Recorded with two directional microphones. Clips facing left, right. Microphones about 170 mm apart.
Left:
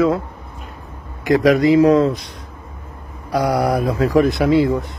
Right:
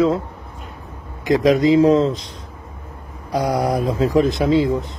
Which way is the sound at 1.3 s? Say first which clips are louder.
Left 1 dB; 15° right (ahead or behind).